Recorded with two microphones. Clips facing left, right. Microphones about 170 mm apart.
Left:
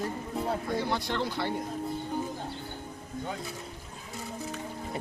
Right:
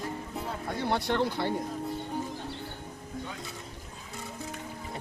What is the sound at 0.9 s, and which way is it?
Speech, 60° right (ahead or behind).